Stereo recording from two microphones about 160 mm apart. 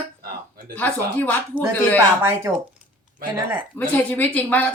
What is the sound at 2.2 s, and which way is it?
Speech, 15° right (ahead or behind).